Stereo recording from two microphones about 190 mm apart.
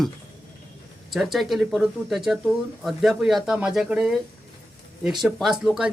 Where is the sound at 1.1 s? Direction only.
Centre (ahead or behind).